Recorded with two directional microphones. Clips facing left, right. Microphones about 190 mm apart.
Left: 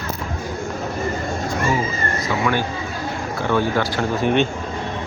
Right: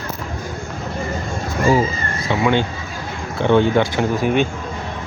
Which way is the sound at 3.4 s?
20° right (ahead or behind).